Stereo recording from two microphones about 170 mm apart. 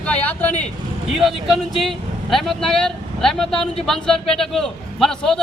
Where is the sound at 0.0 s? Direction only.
10° left (ahead or behind).